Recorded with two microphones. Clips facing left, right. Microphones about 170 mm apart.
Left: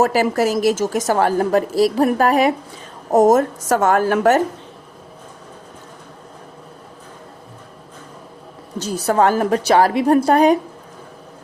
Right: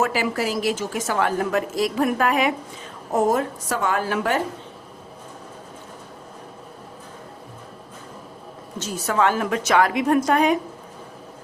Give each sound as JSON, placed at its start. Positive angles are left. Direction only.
{"t": 0.0, "sound": "a woman's voice", "side_deg": 40}
{"t": 8.8, "sound": "a woman's voice", "side_deg": 35}